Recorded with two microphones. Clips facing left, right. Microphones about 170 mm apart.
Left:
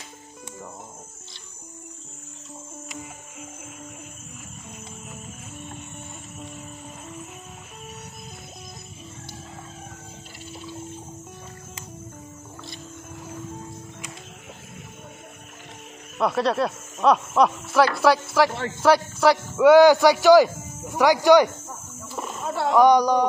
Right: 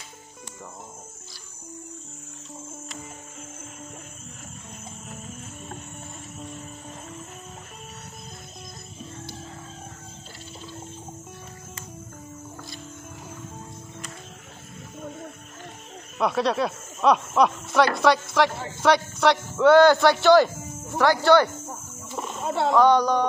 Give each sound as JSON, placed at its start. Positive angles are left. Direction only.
{"t": 16.2, "sound": "a man's voice", "side_deg": 0}
{"t": 22.1, "sound": "a sound", "side_deg": 0}
{"t": 22.7, "sound": "speech", "side_deg": 15}